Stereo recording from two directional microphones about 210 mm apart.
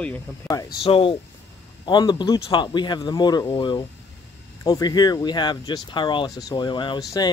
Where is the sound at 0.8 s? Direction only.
25° left (ahead or behind).